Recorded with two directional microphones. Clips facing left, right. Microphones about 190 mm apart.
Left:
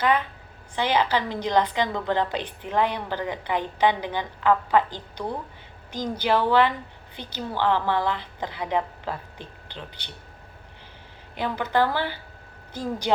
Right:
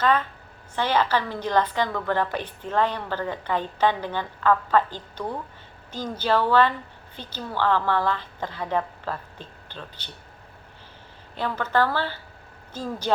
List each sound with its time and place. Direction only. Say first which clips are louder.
0.0 s a woman's voice: right 1 dB; 15° left (ahead or behind)
11.3 s a woman's voice: even; 15° left (ahead or behind)